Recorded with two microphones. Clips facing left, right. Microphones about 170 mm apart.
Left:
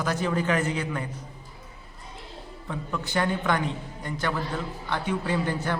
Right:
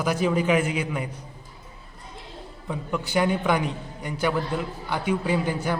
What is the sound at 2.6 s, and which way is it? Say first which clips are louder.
A man's voice: right 3 dB; 10° right (ahead or behind).